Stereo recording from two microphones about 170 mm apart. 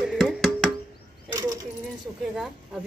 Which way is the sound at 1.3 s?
20° right (ahead or behind).